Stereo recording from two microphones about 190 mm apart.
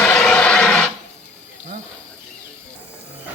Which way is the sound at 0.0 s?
5° left (ahead or behind).